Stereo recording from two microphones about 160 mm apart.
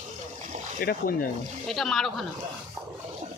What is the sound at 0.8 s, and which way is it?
Speech, 65° left (ahead or behind).